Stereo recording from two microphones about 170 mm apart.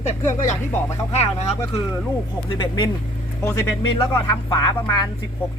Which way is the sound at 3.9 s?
20° left (ahead or behind).